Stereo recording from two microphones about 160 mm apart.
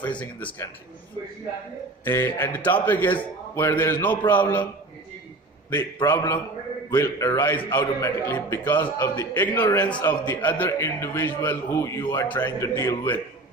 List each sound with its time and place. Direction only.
0.2 s a man's voice: 10° left (ahead or behind)
2.0 s a man's voice: 15° left (ahead or behind)
6.0 s a man's voice: 15° left (ahead or behind)